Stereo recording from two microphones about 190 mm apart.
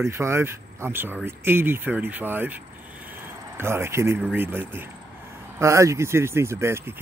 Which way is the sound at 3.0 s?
10° right (ahead or behind).